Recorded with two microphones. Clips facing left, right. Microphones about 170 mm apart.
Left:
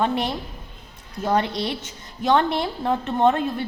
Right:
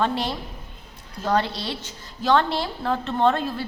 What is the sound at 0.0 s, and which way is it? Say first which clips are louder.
A woman's voice: left 1 dB; 20° left (ahead or behind).